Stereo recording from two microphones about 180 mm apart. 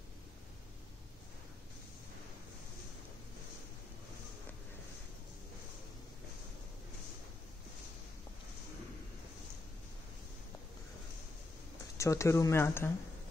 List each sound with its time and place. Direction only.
12.0 s speech: 15° left (ahead or behind)